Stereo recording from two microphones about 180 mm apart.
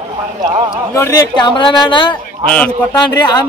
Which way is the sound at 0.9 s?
20° left (ahead or behind).